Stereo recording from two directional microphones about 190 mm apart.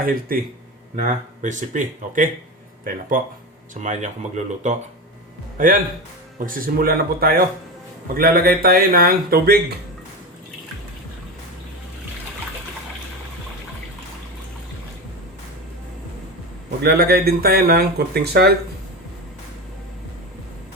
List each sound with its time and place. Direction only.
0.0 s speech: 50° right (ahead or behind)
16.8 s speech: 55° right (ahead or behind)